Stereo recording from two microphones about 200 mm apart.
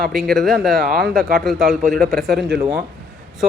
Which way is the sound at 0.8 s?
50° right (ahead or behind).